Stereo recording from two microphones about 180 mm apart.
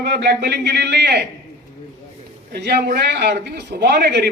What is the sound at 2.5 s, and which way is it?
A man's voice, 65° right (ahead or behind).